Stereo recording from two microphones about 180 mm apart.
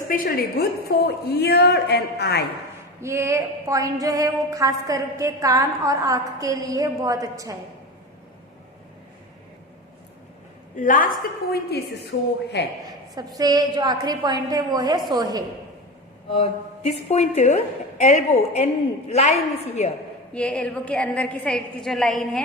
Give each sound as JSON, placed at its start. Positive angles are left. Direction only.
{"t": 0.1, "sound": "a woman's voice", "side_deg": 60}
{"t": 3.0, "sound": "a sound", "side_deg": -15}
{"t": 10.8, "sound": "a woman's voice", "side_deg": 45}
{"t": 13.1, "sound": "a sound", "side_deg": -20}
{"t": 16.9, "sound": "a woman's voice", "side_deg": 35}
{"t": 20.3, "sound": "a woman's voice", "side_deg": 5}